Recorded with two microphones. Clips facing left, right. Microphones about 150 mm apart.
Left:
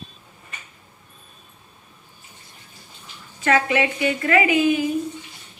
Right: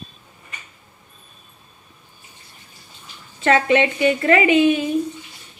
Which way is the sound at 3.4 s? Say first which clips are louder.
Right 3 dB; 30° right (ahead or behind).